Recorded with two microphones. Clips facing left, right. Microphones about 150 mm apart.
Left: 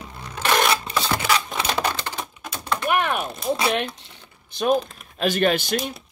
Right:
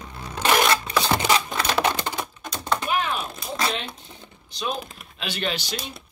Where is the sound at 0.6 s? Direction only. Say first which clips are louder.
Right 1 dB; 5° left (ahead or behind).